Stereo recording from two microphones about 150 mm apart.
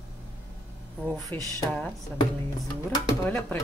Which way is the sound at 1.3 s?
15° left (ahead or behind).